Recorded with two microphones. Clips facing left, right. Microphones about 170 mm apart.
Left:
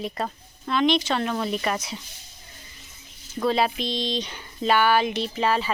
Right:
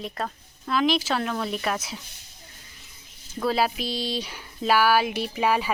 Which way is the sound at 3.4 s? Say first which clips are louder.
Left 1 dB; 5° right (ahead or behind).